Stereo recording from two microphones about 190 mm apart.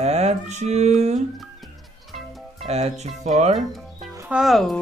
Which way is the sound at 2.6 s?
35° right (ahead or behind).